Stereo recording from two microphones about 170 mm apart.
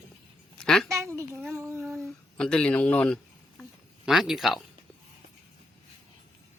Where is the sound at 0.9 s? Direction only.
15° right (ahead or behind).